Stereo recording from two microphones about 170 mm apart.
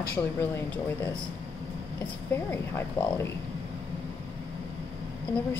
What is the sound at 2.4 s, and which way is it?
Speech, 15° left (ahead or behind).